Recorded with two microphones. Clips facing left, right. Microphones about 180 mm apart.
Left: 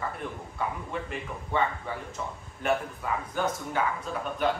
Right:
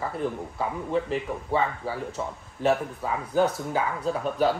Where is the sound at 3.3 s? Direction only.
35° right (ahead or behind).